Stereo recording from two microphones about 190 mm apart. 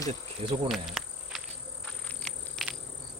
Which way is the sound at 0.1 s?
35° right (ahead or behind).